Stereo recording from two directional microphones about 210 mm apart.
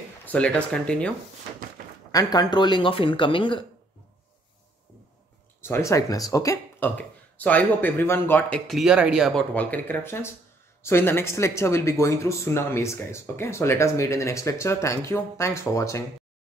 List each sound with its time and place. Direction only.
0.3 s speech: 5° left (ahead or behind)
2.1 s speech: 20° left (ahead or behind)
5.6 s speech: 15° left (ahead or behind)